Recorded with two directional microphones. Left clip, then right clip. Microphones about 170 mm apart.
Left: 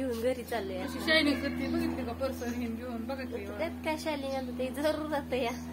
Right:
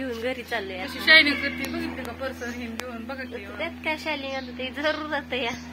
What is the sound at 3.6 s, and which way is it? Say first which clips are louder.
A woman's voice: right 5 dB; 15° right (ahead or behind).